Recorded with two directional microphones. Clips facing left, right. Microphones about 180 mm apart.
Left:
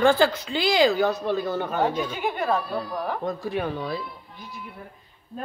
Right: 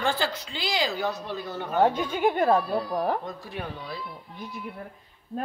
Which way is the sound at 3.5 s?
80° left.